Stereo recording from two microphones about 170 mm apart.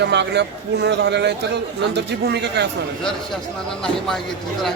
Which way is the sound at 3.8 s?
5° left (ahead or behind).